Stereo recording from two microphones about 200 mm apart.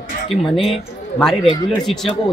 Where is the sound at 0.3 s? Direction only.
Centre (ahead or behind).